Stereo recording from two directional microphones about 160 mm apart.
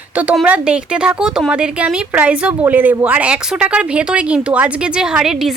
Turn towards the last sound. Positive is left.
turn(degrees=-5)  # may be behind; listen again after turning